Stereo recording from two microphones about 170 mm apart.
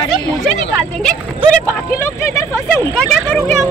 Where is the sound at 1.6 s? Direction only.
15° left (ahead or behind).